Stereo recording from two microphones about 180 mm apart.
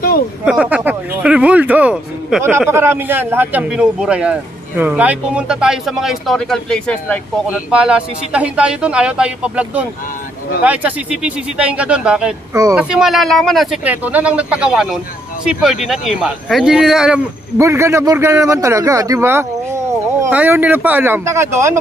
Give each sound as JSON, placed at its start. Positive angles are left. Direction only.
{"t": 0.5, "sound": "a man's voice", "side_deg": -5}
{"t": 7.4, "sound": "a man's voice", "side_deg": -5}
{"t": 17.6, "sound": "speech", "side_deg": -15}